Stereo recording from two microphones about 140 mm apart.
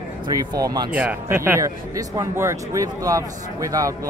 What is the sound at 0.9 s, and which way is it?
Speech, 10° right (ahead or behind).